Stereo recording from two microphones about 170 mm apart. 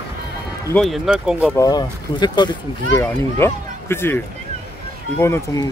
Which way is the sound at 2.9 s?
15° left (ahead or behind).